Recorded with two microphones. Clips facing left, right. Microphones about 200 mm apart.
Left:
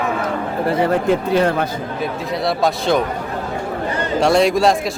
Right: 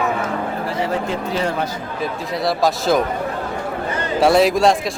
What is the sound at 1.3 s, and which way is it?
Speech, 55° left (ahead or behind).